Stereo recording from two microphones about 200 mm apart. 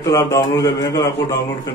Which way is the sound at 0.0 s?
15° left (ahead or behind).